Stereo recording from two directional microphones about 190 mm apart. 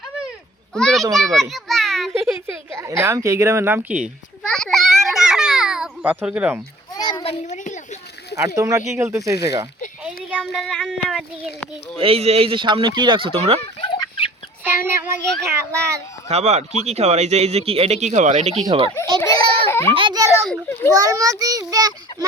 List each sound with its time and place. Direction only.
0.7 s a child's voice: 5° left (ahead or behind)
2.2 s speech: 15° right (ahead or behind)
4.5 s a sound: centre (ahead or behind)
6.9 s a sound: 20° left (ahead or behind); by 7.8 s 40° left (ahead or behind)
8.4 s speech: 15° right (ahead or behind)
10.2 s child singing: 5° right (ahead or behind)
11.9 s speech: 30° right (ahead or behind)
13.8 s fowl: 25° left (ahead or behind)
14.6 s child singing: 10° right (ahead or behind)
15.4 s speech: 15° right (ahead or behind)
16.3 s speech: 35° right (ahead or behind)
19.2 s a sound: 15° left (ahead or behind)
19.9 s a sound: 25° right (ahead or behind)
20.9 s speech: 20° right (ahead or behind)